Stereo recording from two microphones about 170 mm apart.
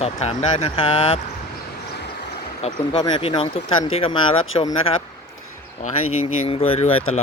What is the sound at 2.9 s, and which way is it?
Speech, 30° left (ahead or behind).